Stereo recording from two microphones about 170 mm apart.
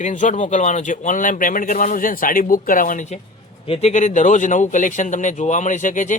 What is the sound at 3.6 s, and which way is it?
Speech, 40° left (ahead or behind).